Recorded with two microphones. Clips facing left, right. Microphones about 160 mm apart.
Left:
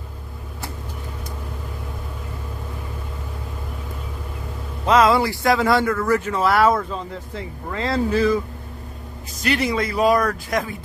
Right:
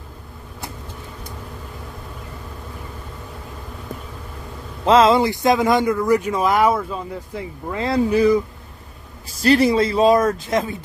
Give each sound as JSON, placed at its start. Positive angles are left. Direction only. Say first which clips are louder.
{"t": 4.8, "sound": "speech", "louder": "right 2 dB", "side_deg": -25}
{"t": 9.4, "sound": "speech", "louder": "right 6 dB", "side_deg": -35}